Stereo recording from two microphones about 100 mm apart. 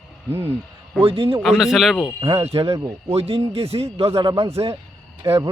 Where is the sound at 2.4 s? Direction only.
75° right (ahead or behind).